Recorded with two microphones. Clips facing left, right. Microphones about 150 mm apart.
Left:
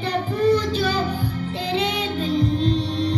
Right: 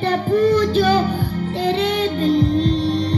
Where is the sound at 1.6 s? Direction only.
45° right (ahead or behind).